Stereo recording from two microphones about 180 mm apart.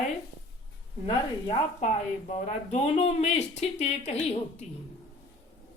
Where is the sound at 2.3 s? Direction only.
40° left (ahead or behind).